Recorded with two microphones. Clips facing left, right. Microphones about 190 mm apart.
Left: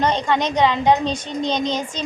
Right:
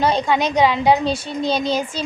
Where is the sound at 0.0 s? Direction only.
10° right (ahead or behind).